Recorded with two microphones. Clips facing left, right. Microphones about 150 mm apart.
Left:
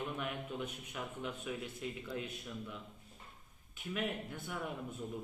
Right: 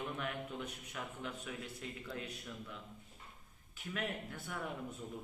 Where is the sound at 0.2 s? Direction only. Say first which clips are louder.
Left 1 dB; 15° left (ahead or behind).